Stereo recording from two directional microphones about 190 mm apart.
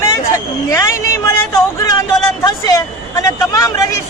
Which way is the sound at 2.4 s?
20° left (ahead or behind).